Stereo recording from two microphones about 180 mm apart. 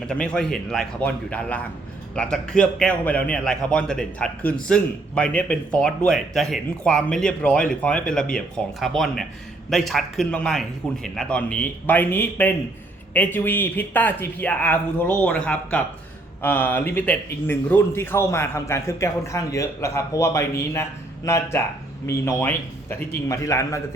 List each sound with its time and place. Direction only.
0.1 s speech: 5° left (ahead or behind)